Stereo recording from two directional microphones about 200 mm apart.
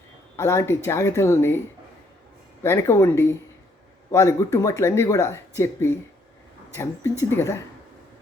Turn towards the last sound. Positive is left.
turn(degrees=15)  # may be behind; listen again after turning